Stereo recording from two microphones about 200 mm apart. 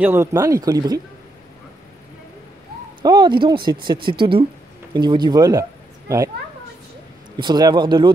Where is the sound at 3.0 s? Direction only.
20° right (ahead or behind).